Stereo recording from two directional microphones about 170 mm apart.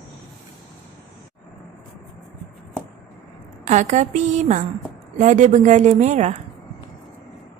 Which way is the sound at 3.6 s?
45° right (ahead or behind).